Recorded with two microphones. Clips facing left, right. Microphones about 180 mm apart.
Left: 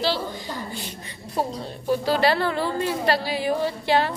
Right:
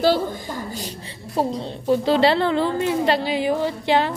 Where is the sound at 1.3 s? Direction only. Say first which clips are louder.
Right 4 dB; 25° right (ahead or behind).